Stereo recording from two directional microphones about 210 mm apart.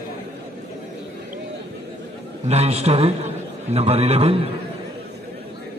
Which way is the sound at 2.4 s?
30° right (ahead or behind).